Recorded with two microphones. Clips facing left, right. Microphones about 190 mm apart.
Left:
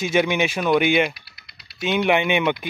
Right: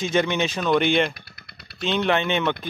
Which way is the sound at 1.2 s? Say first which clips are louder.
Right 6 dB; 50° right (ahead or behind).